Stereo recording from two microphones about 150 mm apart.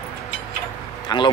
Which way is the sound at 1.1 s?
30° left (ahead or behind).